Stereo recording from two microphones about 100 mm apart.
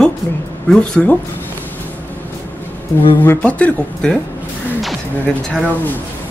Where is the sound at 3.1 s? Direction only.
15° left (ahead or behind).